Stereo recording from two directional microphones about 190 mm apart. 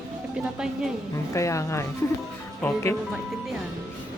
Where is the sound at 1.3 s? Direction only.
15° left (ahead or behind).